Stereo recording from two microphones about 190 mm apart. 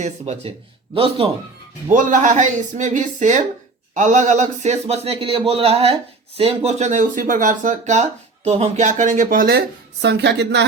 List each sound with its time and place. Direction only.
0.0 s a man's voice: 35° right (ahead or behind)
1.9 s a man's voice: 40° right (ahead or behind); by 10.7 s 65° right (ahead or behind)